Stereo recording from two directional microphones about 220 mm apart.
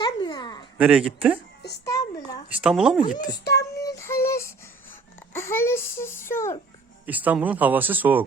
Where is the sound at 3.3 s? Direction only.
45° left (ahead or behind).